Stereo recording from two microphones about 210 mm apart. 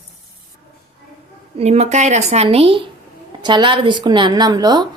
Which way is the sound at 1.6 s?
30° right (ahead or behind).